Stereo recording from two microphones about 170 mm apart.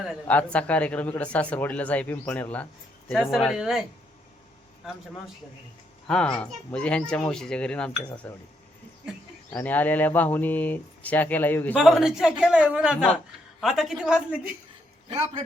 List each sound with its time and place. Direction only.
0.3 s a man's voice: 10° left (ahead or behind)
6.1 s a man's voice: 5° left (ahead or behind)
9.5 s speech: 10° left (ahead or behind)
11.7 s a man's voice: 5° right (ahead or behind)
15.1 s a man's voice: 40° right (ahead or behind)